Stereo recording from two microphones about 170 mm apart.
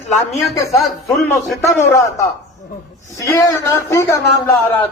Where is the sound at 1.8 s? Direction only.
15° left (ahead or behind).